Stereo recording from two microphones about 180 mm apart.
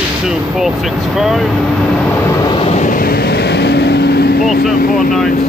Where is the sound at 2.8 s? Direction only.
50° left (ahead or behind).